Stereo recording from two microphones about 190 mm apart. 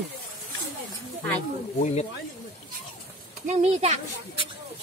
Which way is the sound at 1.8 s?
35° left (ahead or behind).